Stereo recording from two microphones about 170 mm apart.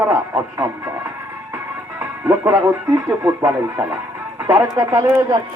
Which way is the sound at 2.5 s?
15° right (ahead or behind).